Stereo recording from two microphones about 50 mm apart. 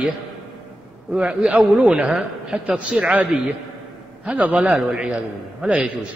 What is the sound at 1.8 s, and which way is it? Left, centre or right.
A man's voice, centre.